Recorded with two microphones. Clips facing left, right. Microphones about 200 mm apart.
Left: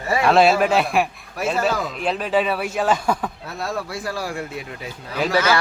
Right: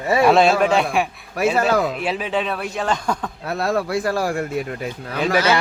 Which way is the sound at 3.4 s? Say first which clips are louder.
Right 6 dB; 65° right (ahead or behind).